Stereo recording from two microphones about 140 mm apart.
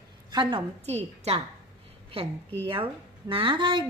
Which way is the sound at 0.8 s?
50° right (ahead or behind).